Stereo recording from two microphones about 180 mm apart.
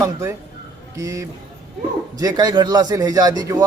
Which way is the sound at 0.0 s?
15° right (ahead or behind).